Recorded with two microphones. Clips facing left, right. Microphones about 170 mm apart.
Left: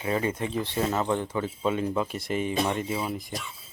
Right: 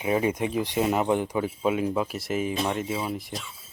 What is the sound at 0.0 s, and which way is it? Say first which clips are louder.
Speech: right 3 dB; 15° right (ahead or behind).